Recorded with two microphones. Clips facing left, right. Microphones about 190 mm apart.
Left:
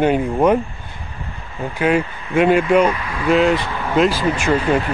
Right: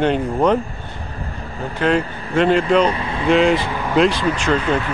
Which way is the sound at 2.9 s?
30° right (ahead or behind).